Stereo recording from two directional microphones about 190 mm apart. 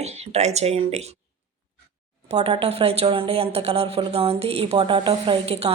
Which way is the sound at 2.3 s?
35° right (ahead or behind).